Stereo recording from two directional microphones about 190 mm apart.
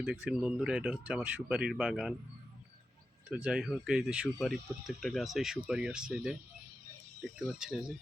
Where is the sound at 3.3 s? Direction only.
5° right (ahead or behind).